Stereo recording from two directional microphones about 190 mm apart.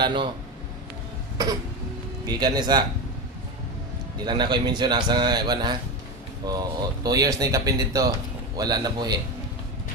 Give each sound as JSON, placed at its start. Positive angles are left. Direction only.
{"t": 0.0, "sound": "speech", "side_deg": -25}
{"t": 2.2, "sound": "speech", "side_deg": -20}
{"t": 4.2, "sound": "speech", "side_deg": -25}